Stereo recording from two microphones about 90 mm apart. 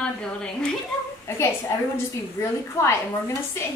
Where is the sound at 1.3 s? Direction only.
25° left (ahead or behind).